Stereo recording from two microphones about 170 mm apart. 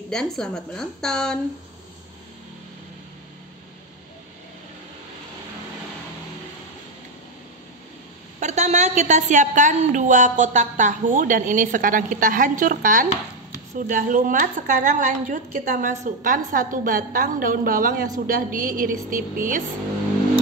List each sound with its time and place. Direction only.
0.1 s a woman's voice: 5° left (ahead or behind)
8.4 s a woman's voice: 45° right (ahead or behind)